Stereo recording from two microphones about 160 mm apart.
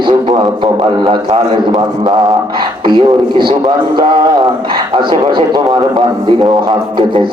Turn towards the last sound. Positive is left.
turn(degrees=-30)  # may be behind; listen again after turning